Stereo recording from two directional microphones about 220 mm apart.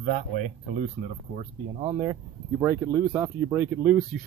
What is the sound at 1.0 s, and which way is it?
Speech, 25° right (ahead or behind).